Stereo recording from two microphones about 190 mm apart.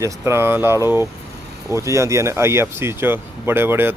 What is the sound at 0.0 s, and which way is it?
Speech, 15° right (ahead or behind).